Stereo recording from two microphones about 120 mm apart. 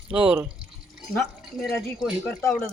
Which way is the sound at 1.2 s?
Centre (ahead or behind).